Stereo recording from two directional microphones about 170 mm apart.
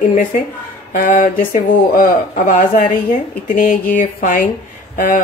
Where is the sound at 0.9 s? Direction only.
50° left (ahead or behind).